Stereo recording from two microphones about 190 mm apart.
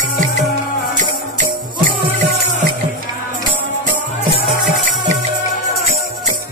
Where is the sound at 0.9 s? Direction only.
40° right (ahead or behind).